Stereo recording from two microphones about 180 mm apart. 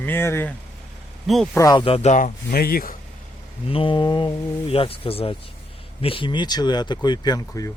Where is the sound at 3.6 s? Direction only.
30° left (ahead or behind).